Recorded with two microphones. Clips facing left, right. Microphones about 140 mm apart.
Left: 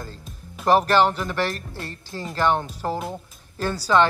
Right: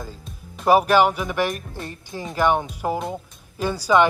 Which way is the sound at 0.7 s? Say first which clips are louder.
Right 2 dB; 10° right (ahead or behind).